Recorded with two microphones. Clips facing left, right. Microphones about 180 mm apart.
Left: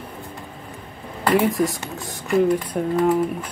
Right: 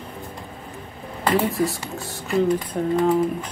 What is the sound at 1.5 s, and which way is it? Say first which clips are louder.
Speech: left 1 dB; 15° left (ahead or behind).